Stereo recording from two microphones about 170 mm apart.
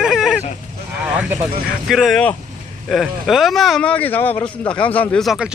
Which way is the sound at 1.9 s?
Centre (ahead or behind).